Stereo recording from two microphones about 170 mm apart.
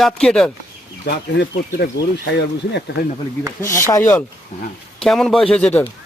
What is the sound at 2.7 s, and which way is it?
Speech, 90° left.